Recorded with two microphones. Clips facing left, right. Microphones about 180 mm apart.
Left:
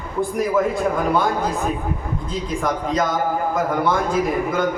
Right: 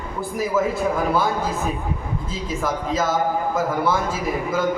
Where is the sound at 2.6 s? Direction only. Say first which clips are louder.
Left 1 dB; 5° right (ahead or behind).